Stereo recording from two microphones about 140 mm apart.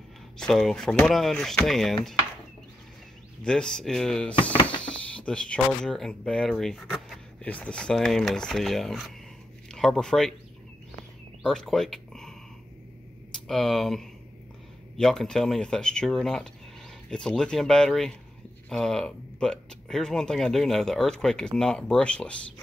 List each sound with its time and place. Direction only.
0.4 s speech: centre (ahead or behind)
3.4 s speech: 5° left (ahead or behind)
4.4 s a sound: 40° left (ahead or behind)
4.8 s speech: 10° left (ahead or behind)
11.4 s a sound: 5° left (ahead or behind)
13.5 s speech: 5° left (ahead or behind)